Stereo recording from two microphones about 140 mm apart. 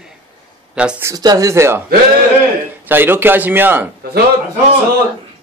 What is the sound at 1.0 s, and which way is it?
Speech, 25° right (ahead or behind).